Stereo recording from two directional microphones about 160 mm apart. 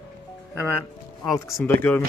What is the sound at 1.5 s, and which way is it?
Speech, 15° left (ahead or behind).